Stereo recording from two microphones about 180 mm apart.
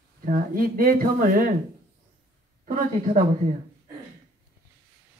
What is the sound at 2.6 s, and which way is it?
Speech, 45° right (ahead or behind).